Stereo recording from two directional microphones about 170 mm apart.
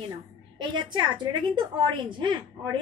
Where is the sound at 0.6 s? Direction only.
25° right (ahead or behind).